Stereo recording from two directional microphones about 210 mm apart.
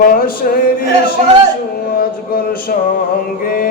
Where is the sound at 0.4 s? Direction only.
40° left (ahead or behind).